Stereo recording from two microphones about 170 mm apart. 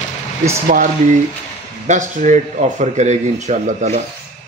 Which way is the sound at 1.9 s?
45° right (ahead or behind).